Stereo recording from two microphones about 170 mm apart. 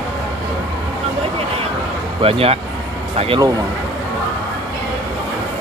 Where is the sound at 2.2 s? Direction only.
35° right (ahead or behind).